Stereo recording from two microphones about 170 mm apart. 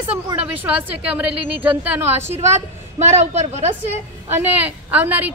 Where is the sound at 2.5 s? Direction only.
40° right (ahead or behind).